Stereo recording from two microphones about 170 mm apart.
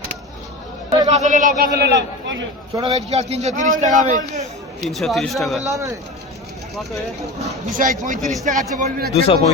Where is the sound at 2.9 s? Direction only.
40° right (ahead or behind).